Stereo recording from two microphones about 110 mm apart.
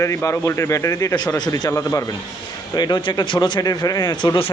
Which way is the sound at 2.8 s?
40° left (ahead or behind).